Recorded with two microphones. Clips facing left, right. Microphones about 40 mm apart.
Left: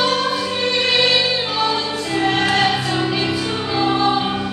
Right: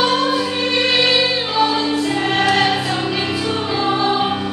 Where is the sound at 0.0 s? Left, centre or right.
Centre.